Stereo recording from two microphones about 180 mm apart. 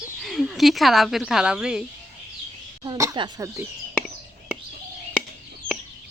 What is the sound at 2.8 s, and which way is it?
Speech, 20° right (ahead or behind).